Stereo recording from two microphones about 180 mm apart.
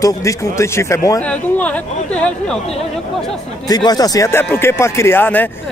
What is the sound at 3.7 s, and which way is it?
Speech, 20° left (ahead or behind).